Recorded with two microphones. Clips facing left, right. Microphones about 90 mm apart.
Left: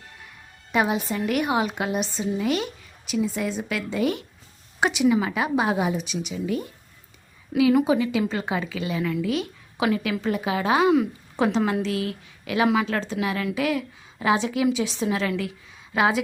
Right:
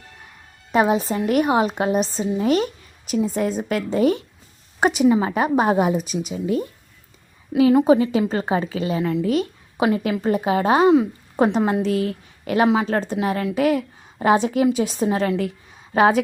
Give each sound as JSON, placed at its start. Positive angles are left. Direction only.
{"t": 0.7, "sound": "a woman's voice", "side_deg": -35}
{"t": 12.6, "sound": "a woman's voice", "side_deg": -30}